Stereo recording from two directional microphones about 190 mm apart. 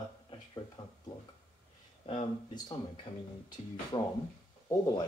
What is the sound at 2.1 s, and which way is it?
Speech, 30° left (ahead or behind).